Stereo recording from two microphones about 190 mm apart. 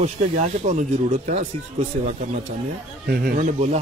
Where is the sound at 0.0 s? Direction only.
40° right (ahead or behind).